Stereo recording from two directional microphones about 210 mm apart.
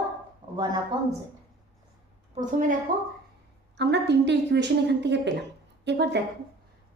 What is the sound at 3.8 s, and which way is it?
A woman's voice, 55° right (ahead or behind).